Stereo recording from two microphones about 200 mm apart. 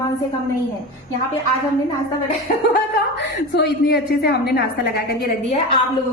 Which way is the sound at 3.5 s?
55° left (ahead or behind).